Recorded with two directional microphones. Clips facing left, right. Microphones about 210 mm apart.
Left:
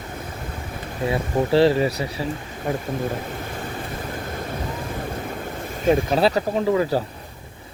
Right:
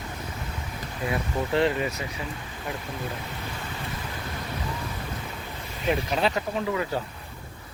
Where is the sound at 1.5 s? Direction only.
35° left (ahead or behind).